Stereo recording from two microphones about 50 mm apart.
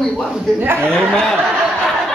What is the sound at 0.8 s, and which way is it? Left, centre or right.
Speech, centre.